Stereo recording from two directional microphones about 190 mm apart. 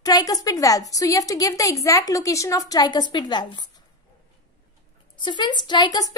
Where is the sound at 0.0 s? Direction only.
20° left (ahead or behind).